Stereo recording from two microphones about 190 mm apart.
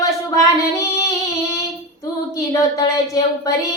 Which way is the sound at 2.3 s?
20° left (ahead or behind).